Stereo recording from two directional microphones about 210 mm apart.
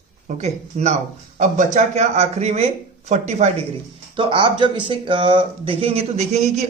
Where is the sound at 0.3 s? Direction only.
35° right (ahead or behind).